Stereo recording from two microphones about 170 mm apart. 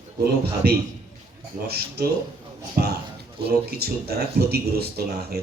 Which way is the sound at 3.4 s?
70° right (ahead or behind).